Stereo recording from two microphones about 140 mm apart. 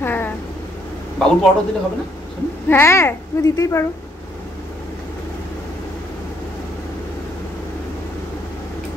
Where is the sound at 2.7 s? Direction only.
20° left (ahead or behind).